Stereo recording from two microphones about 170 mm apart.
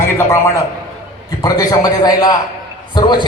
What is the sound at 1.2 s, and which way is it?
A man's voice, 20° left (ahead or behind).